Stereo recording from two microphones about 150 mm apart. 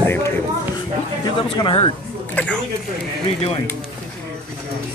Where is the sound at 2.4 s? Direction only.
10° left (ahead or behind).